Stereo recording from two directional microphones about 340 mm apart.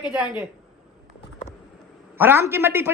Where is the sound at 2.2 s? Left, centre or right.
Centre.